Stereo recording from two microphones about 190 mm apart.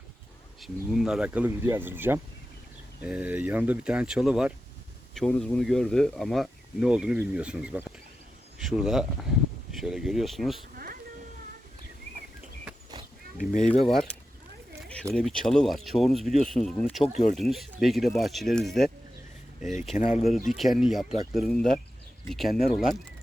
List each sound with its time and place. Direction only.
0.6 s speech: centre (ahead or behind)
13.4 s speech: 45° left (ahead or behind)
13.7 s speech: centre (ahead or behind)
17.1 s speech: 45° left (ahead or behind)
17.3 s speech: centre (ahead or behind)
20.1 s speech: centre (ahead or behind)